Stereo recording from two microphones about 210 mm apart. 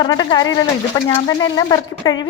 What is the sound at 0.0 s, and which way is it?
A woman's voice, 20° left (ahead or behind).